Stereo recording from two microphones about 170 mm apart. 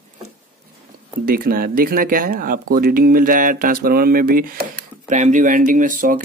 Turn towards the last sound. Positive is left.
turn(degrees=-50)  # may be behind; listen again after turning